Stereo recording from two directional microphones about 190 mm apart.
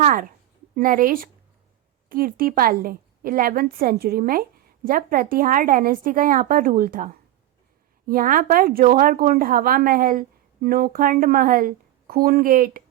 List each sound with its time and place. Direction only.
0.0 s a woman's voice: 50° right (ahead or behind)